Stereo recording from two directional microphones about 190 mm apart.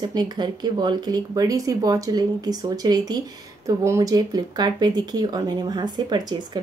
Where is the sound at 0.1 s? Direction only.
20° right (ahead or behind).